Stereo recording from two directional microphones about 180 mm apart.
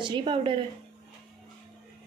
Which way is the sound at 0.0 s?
25° right (ahead or behind).